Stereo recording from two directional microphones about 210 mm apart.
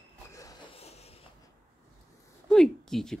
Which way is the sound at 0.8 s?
30° left (ahead or behind).